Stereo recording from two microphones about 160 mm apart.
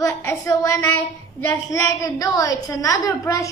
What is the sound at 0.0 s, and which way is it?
A woman's voice, 20° left (ahead or behind).